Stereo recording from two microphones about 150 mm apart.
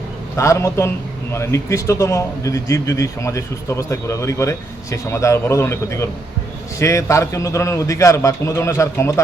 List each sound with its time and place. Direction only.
0.3 s speech: 20° left (ahead or behind)